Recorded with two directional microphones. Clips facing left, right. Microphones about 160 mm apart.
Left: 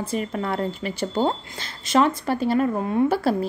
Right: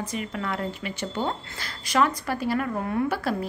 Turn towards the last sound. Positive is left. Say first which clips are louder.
# left 5 dB
turn(degrees=30)  # may be behind; listen again after turning